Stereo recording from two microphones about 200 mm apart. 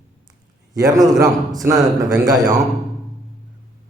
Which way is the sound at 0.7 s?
20° right (ahead or behind).